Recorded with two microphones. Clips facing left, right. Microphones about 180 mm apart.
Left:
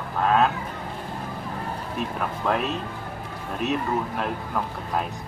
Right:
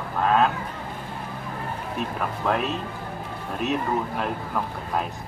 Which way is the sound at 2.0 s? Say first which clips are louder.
Even; centre (ahead or behind).